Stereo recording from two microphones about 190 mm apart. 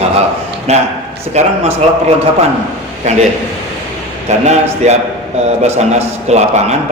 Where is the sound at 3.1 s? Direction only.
40° right (ahead or behind).